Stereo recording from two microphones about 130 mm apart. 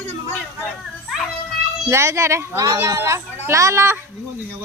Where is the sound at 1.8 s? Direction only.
20° right (ahead or behind).